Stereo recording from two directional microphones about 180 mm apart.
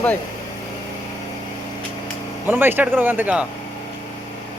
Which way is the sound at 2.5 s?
10° right (ahead or behind).